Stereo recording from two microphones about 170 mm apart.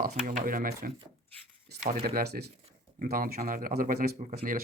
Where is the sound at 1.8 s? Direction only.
45° right (ahead or behind).